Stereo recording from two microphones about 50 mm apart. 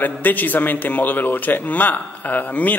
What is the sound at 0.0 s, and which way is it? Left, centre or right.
A man's voice, left.